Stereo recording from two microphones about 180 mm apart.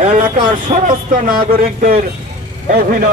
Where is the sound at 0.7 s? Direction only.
45° right (ahead or behind).